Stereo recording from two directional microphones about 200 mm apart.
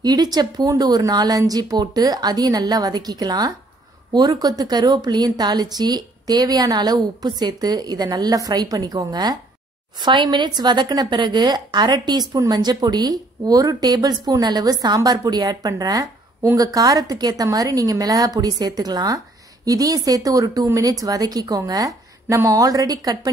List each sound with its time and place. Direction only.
0.0 s a woman's voice: 20° right (ahead or behind)